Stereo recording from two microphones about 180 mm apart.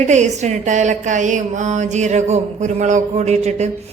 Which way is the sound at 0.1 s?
40° right (ahead or behind).